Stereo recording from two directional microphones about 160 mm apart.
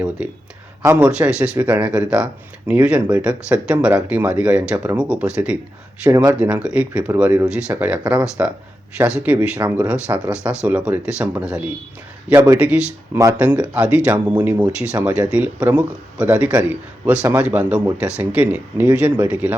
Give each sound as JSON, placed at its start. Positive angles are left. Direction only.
{"t": 0.2, "sound": "a man's voice", "side_deg": -5}
{"t": 12.3, "sound": "a man's voice", "side_deg": -20}
{"t": 12.5, "sound": "a man's voice", "side_deg": -5}